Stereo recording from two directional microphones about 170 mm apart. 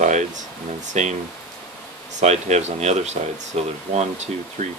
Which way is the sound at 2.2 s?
40° right (ahead or behind).